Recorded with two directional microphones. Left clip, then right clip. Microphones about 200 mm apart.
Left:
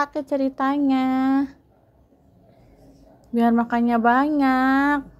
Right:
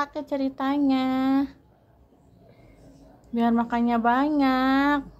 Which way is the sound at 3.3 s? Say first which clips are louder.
Left 4 dB; 25° left (ahead or behind).